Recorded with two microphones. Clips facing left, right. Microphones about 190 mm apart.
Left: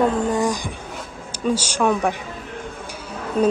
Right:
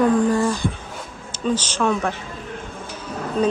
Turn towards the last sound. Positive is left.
turn(degrees=10)  # may be behind; listen again after turning